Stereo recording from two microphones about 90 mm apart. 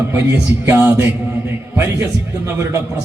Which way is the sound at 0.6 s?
25° right (ahead or behind).